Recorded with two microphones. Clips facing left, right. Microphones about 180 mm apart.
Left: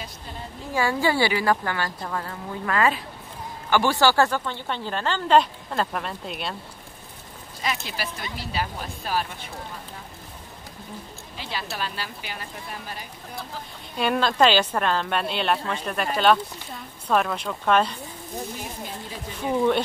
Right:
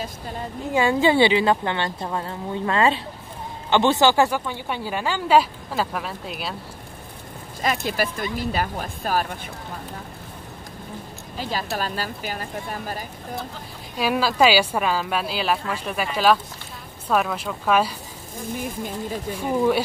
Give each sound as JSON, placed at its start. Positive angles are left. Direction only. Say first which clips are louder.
{"t": 0.7, "sound": "a woman's voice", "louder": "right 5 dB", "side_deg": -20}
{"t": 7.6, "sound": "speech", "louder": "right 6 dB", "side_deg": -50}
{"t": 11.3, "sound": "speech", "louder": "right 5 dB", "side_deg": -45}
{"t": 13.9, "sound": "speech", "louder": "right 1 dB", "side_deg": -5}
{"t": 17.1, "sound": "speech", "louder": "right 1 dB", "side_deg": -5}
{"t": 18.5, "sound": "speech", "louder": "right 6 dB", "side_deg": -50}
{"t": 19.4, "sound": "speech", "louder": "right 1 dB", "side_deg": -5}